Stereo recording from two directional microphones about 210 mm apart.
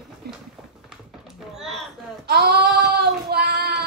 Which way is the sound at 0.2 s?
50° right (ahead or behind).